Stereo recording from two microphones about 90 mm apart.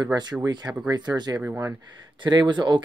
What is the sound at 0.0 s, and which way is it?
Speech, 50° right (ahead or behind).